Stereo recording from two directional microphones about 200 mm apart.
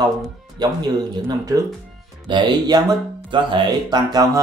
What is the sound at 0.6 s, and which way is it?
Speech, 20° right (ahead or behind).